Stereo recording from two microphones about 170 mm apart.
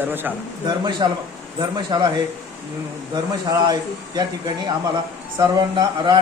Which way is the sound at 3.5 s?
25° right (ahead or behind).